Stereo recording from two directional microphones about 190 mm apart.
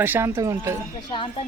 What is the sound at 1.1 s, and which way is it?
Speech, 30° left (ahead or behind).